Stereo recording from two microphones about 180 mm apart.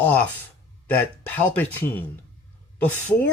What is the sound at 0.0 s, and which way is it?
Speech, 10° left (ahead or behind).